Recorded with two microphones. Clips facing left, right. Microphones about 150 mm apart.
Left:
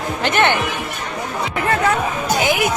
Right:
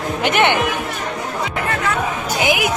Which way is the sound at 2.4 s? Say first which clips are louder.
Right 1 dB; 15° right (ahead or behind).